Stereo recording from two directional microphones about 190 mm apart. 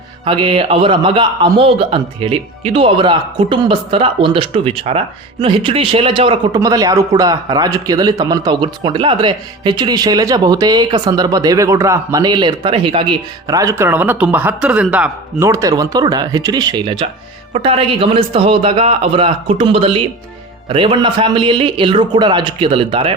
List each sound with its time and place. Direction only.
0.3 s a man's voice: 25° right (ahead or behind)